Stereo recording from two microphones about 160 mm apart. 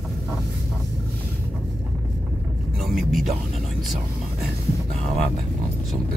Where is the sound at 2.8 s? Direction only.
Centre (ahead or behind).